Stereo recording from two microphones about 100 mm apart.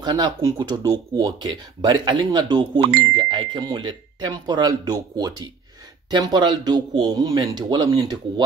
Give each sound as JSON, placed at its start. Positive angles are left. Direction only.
{"t": 0.0, "sound": "speech", "side_deg": -45}